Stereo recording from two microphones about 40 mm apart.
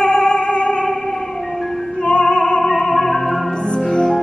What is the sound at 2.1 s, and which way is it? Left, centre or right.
Music, left.